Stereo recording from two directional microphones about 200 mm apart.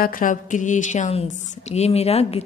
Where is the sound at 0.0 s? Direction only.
40° left (ahead or behind).